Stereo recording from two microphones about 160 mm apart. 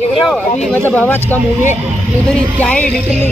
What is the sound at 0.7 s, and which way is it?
Speech, 10° left (ahead or behind).